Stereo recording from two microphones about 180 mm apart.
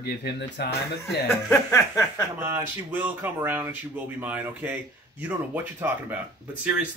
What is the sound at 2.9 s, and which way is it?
Speech, 10° right (ahead or behind).